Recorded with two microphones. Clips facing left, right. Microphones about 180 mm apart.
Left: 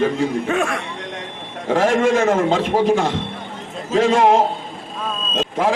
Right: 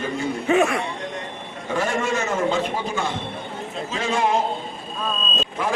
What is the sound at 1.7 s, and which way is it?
A man's voice, 90° left.